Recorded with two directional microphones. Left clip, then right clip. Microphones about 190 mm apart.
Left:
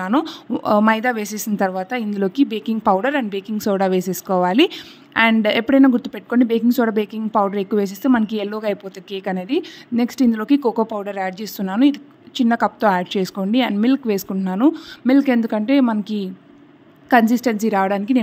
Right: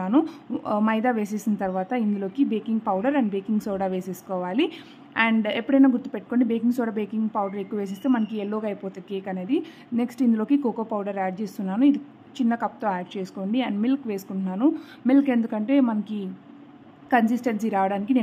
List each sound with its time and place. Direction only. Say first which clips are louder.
0.0 s a woman's voice: left 3 dB; 25° left (ahead or behind)